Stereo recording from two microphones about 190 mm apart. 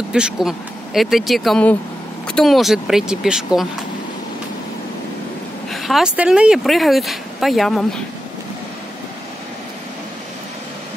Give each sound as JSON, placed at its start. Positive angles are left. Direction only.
{"t": 0.1, "sound": "speech", "side_deg": -5}
{"t": 5.7, "sound": "speech", "side_deg": 0}